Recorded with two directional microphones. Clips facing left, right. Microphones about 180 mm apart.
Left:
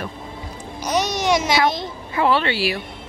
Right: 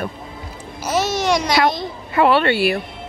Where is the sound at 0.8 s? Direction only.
Centre (ahead or behind).